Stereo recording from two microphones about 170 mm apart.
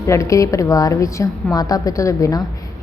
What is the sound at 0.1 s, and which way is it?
A woman's voice, 20° left (ahead or behind).